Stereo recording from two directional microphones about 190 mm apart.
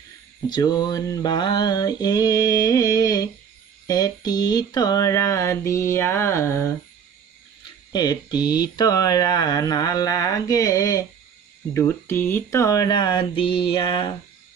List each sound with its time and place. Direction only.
0.5 s speech: 20° left (ahead or behind)
3.8 s a sound: 20° left (ahead or behind)
7.9 s speech: 20° left (ahead or behind)